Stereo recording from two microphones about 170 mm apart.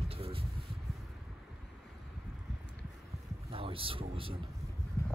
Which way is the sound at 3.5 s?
35° right (ahead or behind).